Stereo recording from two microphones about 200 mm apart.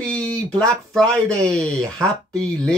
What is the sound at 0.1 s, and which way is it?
Speech, 5° left (ahead or behind).